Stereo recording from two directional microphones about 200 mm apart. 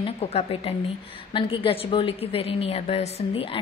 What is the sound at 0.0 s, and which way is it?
A woman's voice, 30° left (ahead or behind).